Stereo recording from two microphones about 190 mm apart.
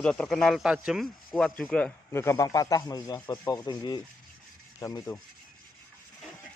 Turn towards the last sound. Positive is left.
turn(degrees=15)  # may be behind; listen again after turning